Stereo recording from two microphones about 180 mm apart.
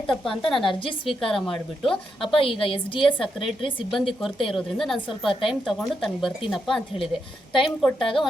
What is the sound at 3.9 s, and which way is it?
A woman's voice, centre (ahead or behind).